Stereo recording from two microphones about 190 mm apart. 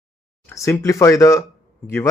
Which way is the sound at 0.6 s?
15° left (ahead or behind).